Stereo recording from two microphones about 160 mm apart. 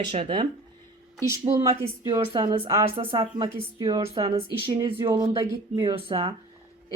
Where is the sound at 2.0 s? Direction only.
30° right (ahead or behind).